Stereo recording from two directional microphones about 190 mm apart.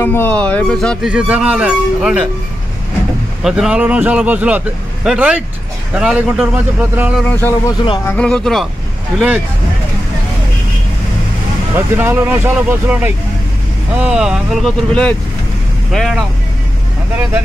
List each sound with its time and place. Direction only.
0.0 s speech: 10° left (ahead or behind)
1.0 s speech: 5° right (ahead or behind)
3.4 s speech: 5° right (ahead or behind)
7.2 s speech: 10° left (ahead or behind)
11.7 s speech: 10° right (ahead or behind)